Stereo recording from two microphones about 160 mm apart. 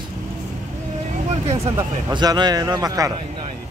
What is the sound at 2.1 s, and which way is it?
Speech, 25° right (ahead or behind).